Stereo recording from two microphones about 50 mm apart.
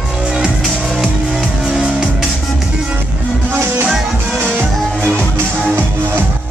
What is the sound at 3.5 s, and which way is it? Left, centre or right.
Music, right.